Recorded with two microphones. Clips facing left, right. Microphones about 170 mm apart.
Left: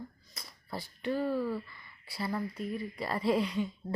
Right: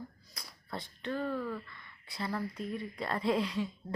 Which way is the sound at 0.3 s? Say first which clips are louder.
Left 1 dB; 5° left (ahead or behind).